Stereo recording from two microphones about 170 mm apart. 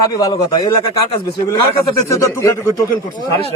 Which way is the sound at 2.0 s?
15° left (ahead or behind).